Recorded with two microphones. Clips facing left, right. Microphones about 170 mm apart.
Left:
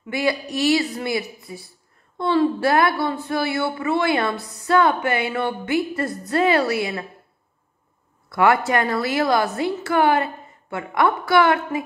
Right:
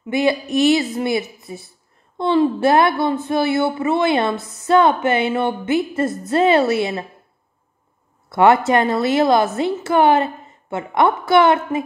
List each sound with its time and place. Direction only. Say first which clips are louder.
0.0 s speech: right 5 dB; 20° right (ahead or behind)
8.3 s speech: right 4 dB; 25° right (ahead or behind)